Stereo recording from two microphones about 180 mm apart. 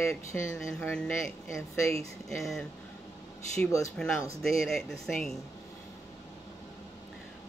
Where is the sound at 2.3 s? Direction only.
Centre (ahead or behind).